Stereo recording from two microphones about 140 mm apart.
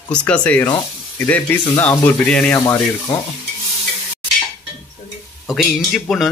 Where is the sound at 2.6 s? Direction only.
25° left (ahead or behind).